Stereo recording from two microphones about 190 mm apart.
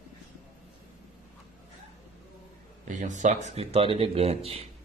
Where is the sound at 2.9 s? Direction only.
40° right (ahead or behind).